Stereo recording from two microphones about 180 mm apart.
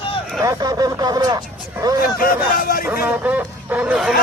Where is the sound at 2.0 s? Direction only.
55° left (ahead or behind).